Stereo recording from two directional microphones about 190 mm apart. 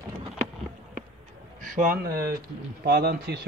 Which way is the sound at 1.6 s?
45° right (ahead or behind).